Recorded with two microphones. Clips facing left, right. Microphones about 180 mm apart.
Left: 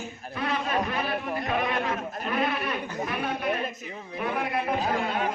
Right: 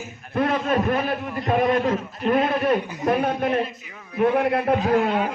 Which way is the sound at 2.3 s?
50° right (ahead or behind).